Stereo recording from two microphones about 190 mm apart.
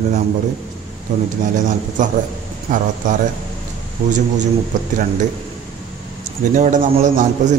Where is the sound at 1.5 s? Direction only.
40° right (ahead or behind).